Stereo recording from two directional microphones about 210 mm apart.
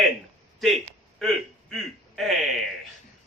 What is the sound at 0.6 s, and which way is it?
A man's voice, centre (ahead or behind).